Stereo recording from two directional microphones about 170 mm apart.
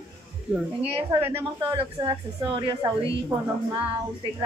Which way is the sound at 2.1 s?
30° right (ahead or behind).